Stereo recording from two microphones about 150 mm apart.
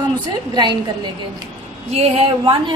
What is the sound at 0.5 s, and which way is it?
Speech, 30° right (ahead or behind).